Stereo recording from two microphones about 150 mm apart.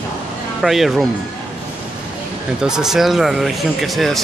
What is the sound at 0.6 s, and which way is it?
Speech, centre (ahead or behind).